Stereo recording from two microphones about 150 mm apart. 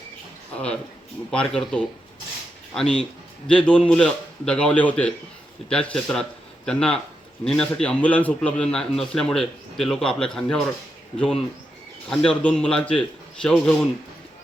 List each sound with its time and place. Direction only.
0.5 s a man's voice: 5° left (ahead or behind)